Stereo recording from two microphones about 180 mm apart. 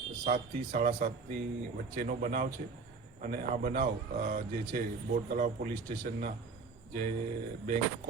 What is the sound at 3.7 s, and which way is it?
A man's voice, 55° right (ahead or behind).